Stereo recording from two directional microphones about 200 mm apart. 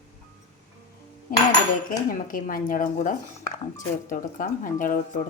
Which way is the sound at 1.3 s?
40° left (ahead or behind).